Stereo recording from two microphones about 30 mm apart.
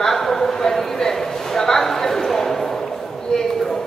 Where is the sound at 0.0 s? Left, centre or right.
Centre.